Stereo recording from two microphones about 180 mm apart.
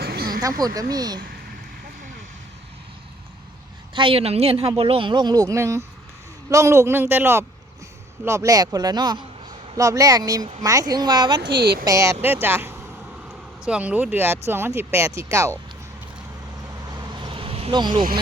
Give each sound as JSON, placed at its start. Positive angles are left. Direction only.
{"t": 0.0, "sound": "a sound", "side_deg": -60}
{"t": 0.6, "sound": "a man's voice", "side_deg": -20}
{"t": 3.9, "sound": "a man's voice", "side_deg": -30}
{"t": 11.6, "sound": "speech", "side_deg": -60}
{"t": 11.9, "sound": "speech", "side_deg": -15}
{"t": 16.9, "sound": "vehicle", "side_deg": -25}